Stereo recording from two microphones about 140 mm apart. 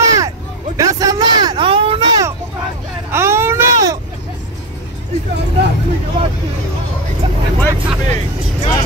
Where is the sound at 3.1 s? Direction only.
20° right (ahead or behind).